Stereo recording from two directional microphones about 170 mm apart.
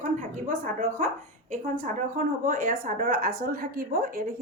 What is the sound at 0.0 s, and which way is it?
A woman's voice, 50° right (ahead or behind).